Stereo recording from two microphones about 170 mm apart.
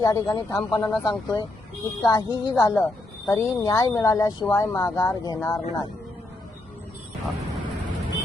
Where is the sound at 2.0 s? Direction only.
25° left (ahead or behind).